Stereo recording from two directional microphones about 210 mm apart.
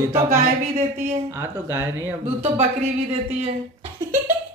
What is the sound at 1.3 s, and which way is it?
Speech, 10° right (ahead or behind).